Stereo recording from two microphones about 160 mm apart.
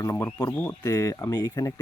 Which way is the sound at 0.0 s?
20° left (ahead or behind).